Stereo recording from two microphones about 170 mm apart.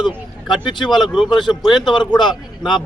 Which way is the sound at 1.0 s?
Centre (ahead or behind).